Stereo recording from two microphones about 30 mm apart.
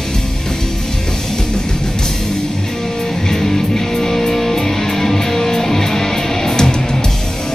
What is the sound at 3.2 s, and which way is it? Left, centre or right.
Music, centre.